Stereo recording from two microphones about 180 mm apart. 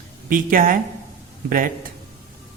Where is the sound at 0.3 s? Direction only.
50° right (ahead or behind).